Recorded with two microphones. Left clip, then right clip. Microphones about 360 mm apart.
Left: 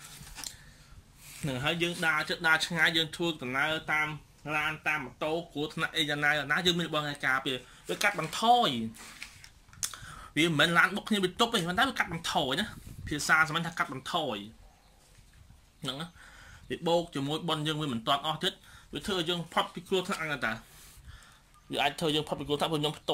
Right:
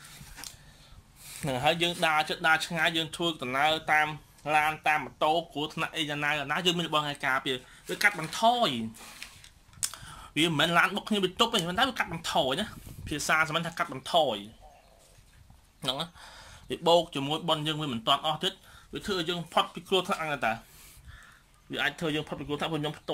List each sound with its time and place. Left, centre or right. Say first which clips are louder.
1.4 s speech: right 4 dB; centre
3.9 s speech: right 5 dB; right
5.2 s speech: right 5 dB; centre
15.8 s speech: right 6 dB; centre
21.6 s a man's voice: left 1 dB; centre